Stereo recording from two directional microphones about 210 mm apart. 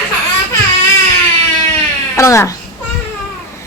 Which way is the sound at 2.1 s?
15° left (ahead or behind).